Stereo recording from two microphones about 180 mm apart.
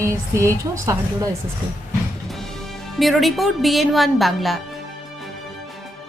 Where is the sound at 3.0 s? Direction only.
Centre (ahead or behind).